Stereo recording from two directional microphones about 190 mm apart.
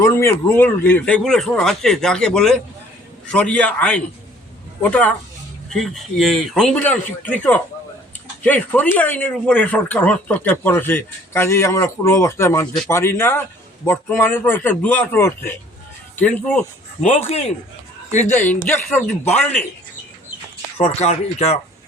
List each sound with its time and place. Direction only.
0.0 s a man's voice: 15° left (ahead or behind)
17.0 s speech: 35° left (ahead or behind)
18.3 s speech: 10° left (ahead or behind)
20.7 s speech: 35° left (ahead or behind)